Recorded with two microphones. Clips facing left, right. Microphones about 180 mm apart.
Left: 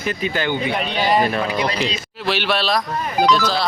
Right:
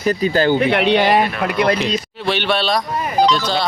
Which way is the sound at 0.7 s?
70° right (ahead or behind).